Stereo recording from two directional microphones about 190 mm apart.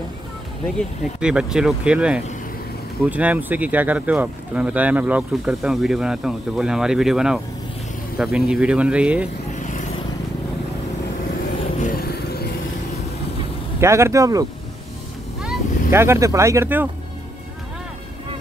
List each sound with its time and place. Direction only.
0.7 s speech: 5° right (ahead or behind)
9.6 s vehicle: 40° left (ahead or behind)
11.8 s vehicle: 55° left (ahead or behind)
13.7 s speech: 15° right (ahead or behind)
15.4 s speech: 10° right (ahead or behind)